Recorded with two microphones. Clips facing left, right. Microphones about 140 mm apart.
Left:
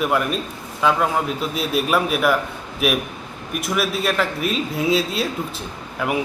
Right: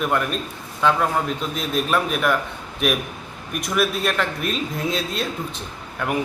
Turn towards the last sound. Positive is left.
turn(degrees=5)  # may be behind; listen again after turning